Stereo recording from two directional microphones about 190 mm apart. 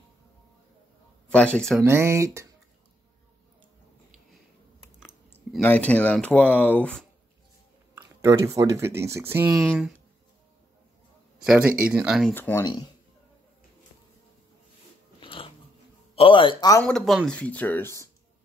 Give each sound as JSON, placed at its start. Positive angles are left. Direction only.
{"t": 1.3, "sound": "speech", "side_deg": 5}
{"t": 1.8, "sound": "speech", "side_deg": -15}
{"t": 5.5, "sound": "speech", "side_deg": 10}
{"t": 7.9, "sound": "speech", "side_deg": -15}
{"t": 9.7, "sound": "speech", "side_deg": 0}
{"t": 11.4, "sound": "speech", "side_deg": -5}
{"t": 15.1, "sound": "biting", "side_deg": 30}
{"t": 16.2, "sound": "speech", "side_deg": 25}
{"t": 16.8, "sound": "speech", "side_deg": 0}